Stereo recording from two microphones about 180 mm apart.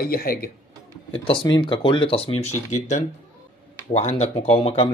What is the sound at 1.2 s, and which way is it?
Speech, 25° left (ahead or behind).